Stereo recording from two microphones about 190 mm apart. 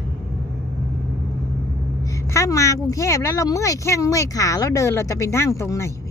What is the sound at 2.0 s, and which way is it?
A woman's voice, 15° left (ahead or behind).